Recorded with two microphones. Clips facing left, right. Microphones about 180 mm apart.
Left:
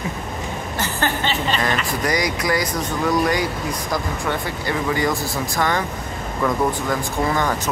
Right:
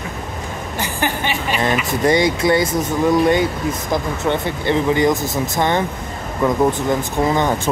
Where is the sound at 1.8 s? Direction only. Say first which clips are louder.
Right 6 dB; 25° right (ahead or behind).